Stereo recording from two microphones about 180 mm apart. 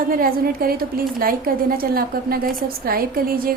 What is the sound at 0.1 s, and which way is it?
A woman's voice, 55° right (ahead or behind).